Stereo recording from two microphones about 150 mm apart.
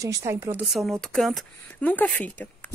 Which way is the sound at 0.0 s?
20° right (ahead or behind).